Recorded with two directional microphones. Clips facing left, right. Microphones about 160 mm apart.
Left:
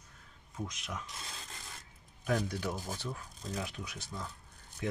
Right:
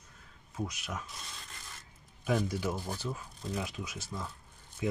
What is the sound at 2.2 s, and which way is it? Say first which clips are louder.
Speech: right 2 dB; 5° right (ahead or behind).